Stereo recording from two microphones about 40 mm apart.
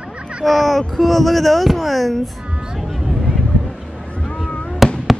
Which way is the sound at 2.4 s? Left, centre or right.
Right.